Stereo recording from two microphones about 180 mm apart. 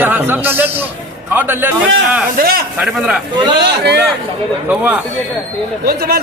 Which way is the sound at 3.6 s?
65° right (ahead or behind).